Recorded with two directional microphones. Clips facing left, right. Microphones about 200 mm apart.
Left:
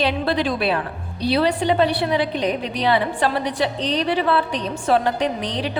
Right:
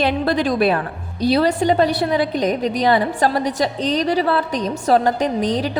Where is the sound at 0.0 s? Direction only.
45° right (ahead or behind).